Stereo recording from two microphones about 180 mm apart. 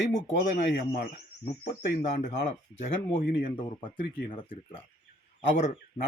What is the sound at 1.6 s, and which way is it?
Speech, 45° left (ahead or behind).